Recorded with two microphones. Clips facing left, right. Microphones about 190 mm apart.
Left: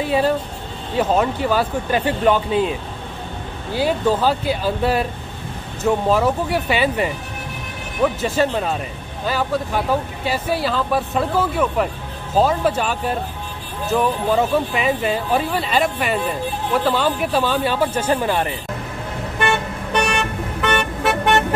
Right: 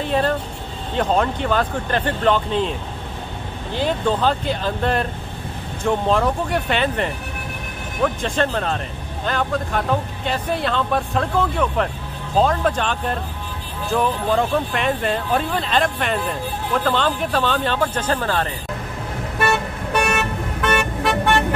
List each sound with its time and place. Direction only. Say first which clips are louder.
0.0 s speech: left 2 dB; 10° left (ahead or behind)
3.7 s speech: left 2 dB; 5° left (ahead or behind)
19.9 s vehicle: even; 5° right (ahead or behind)